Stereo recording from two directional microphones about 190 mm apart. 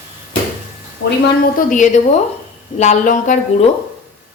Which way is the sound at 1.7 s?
40° left (ahead or behind).